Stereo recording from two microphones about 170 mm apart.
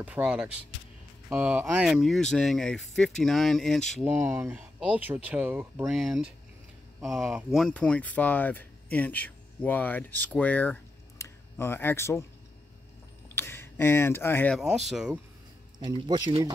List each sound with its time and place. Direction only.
0.0 s speech: 10° right (ahead or behind)
4.0 s speech: 10° right (ahead or behind)
5.9 s speech: centre (ahead or behind); by 12.3 s 15° left (ahead or behind)
13.3 s speech: 15° left (ahead or behind)
14.6 s speech: centre (ahead or behind)
15.8 s speech: 25° right (ahead or behind)